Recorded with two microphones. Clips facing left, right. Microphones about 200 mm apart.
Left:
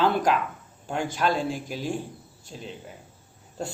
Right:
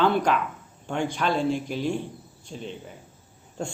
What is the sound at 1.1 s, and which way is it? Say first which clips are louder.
Speech: right 1 dB; 45° left (ahead or behind).